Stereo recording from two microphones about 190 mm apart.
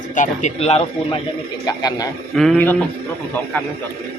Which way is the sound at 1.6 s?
20° left (ahead or behind).